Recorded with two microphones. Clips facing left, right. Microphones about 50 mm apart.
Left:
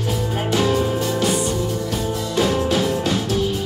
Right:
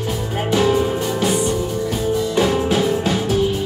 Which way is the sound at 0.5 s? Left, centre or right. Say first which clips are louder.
Right 3 dB; centre.